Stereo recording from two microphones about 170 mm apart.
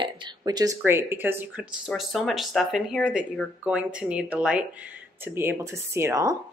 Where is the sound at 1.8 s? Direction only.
Centre (ahead or behind); by 6.4 s 20° right (ahead or behind).